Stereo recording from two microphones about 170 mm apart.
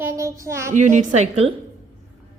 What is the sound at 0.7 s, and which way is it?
Speech, 45° right (ahead or behind).